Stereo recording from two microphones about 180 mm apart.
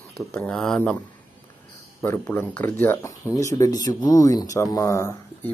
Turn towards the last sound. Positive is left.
turn(degrees=15)  # may be behind; listen again after turning